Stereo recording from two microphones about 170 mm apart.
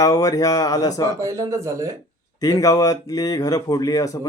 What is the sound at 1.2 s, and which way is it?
Speech, 20° right (ahead or behind).